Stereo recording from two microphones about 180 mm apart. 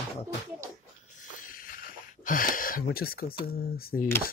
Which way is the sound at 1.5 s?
50° left (ahead or behind).